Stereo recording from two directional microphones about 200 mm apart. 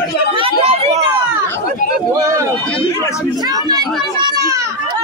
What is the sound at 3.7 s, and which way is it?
Children playing, 20° right (ahead or behind).